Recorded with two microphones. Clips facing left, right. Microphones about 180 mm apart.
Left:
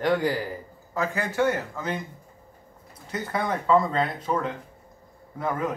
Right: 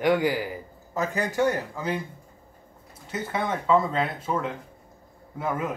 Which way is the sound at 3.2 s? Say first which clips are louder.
Left 1 dB; centre (ahead or behind).